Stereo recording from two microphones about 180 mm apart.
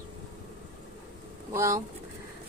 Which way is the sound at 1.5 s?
15° right (ahead or behind).